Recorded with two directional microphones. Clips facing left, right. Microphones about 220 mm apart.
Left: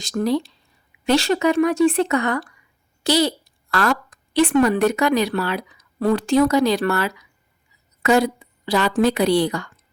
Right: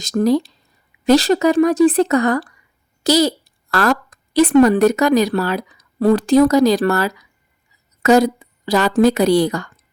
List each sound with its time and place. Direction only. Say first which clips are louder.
0.0 s a woman's voice: right 5 dB; 40° right (ahead or behind)